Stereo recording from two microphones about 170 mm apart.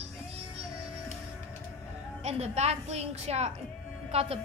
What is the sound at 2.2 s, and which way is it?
A woman's voice, 40° right (ahead or behind).